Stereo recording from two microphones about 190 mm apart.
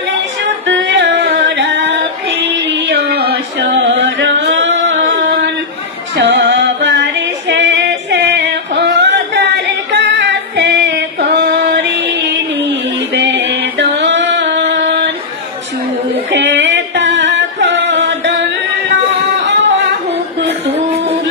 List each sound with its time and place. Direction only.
0.7 s music: 70° right (ahead or behind)
2.4 s singing: 60° right (ahead or behind)
6.1 s female singing: 65° right (ahead or behind)
13.1 s music: 65° right (ahead or behind)
16.3 s singing: 70° right (ahead or behind)